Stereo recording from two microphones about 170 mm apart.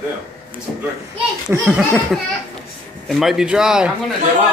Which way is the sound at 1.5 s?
10° right (ahead or behind).